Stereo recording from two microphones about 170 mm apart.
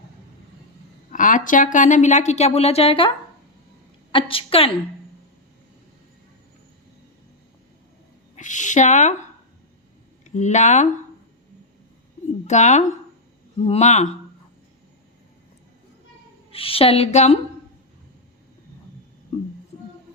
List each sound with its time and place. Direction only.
1.1 s speech: 50° left (ahead or behind); by 3.1 s 35° left (ahead or behind)
4.1 s a woman's voice: 30° left (ahead or behind)
8.4 s speech: 45° left (ahead or behind)
10.2 s speech: 45° left (ahead or behind)
12.5 s speech: 45° left (ahead or behind)
16.5 s a woman's voice: 35° left (ahead or behind)